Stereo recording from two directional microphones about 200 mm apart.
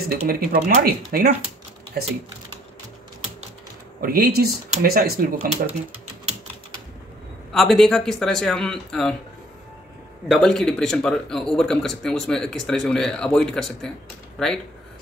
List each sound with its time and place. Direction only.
0.3 s speech: 50° right (ahead or behind)
4.0 s speech: 45° right (ahead or behind)
7.5 s speech: centre (ahead or behind)
10.2 s speech: centre (ahead or behind)